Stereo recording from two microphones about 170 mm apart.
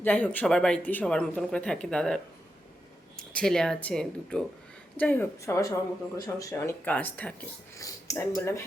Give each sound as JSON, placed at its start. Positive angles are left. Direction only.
{"t": 0.0, "sound": "speech", "side_deg": 10}
{"t": 7.8, "sound": "speech", "side_deg": 20}